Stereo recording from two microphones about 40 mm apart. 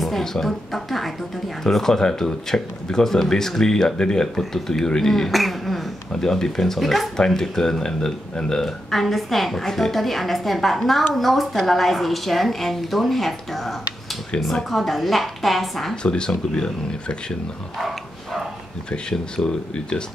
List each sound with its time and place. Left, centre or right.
0.0 s speech: centre
5.3 s a woman's voice: centre
6.2 s speech: centre
7.2 s a woman's voice: centre
15.9 s speech: left
17.7 s bow-wow: centre
18.9 s speech: centre